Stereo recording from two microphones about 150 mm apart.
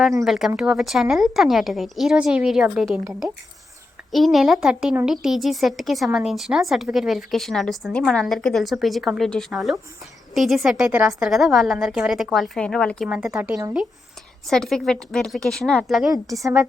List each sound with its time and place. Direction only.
0.3 s a woman's voice: 5° right (ahead or behind)
4.1 s a woman's voice: centre (ahead or behind)
16.2 s a woman's voice: 20° right (ahead or behind)